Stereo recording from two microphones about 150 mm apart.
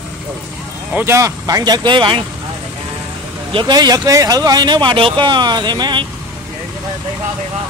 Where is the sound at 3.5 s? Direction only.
30° right (ahead or behind).